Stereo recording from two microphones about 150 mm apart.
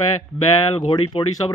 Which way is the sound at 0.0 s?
25° left (ahead or behind).